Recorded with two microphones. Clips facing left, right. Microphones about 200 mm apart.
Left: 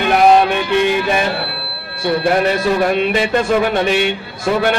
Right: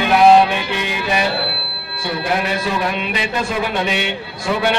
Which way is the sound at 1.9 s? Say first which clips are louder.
Left 6 dB; 50° left (ahead or behind).